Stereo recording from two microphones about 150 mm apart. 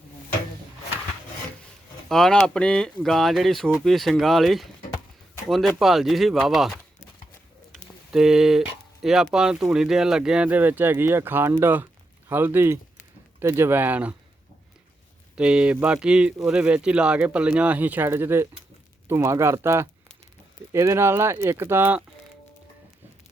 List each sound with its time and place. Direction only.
2.0 s speech: 5° left (ahead or behind)
8.1 s speech: 5° right (ahead or behind)
15.4 s speech: 5° right (ahead or behind)